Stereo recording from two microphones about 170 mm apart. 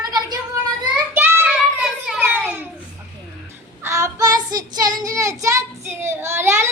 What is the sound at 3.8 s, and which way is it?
Child singing, 15° right (ahead or behind).